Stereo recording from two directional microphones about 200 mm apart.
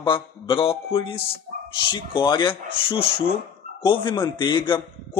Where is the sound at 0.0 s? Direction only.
25° left (ahead or behind).